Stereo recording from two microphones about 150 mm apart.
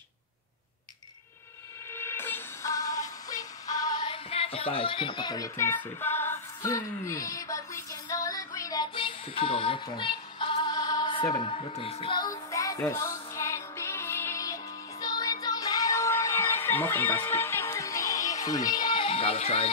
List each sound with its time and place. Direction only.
2.0 s synthetic singing: 15° left (ahead or behind)
4.1 s a sound: 40° left (ahead or behind)
8.9 s music: 35° left (ahead or behind)
11.4 s music: 40° left (ahead or behind)